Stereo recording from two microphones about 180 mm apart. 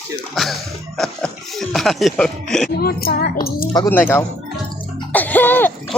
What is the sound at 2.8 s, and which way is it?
Speech, 60° left (ahead or behind).